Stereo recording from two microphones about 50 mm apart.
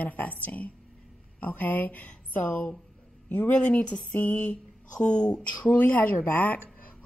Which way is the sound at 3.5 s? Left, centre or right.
Left.